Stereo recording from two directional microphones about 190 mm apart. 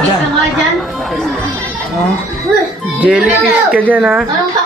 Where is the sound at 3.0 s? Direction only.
5° right (ahead or behind).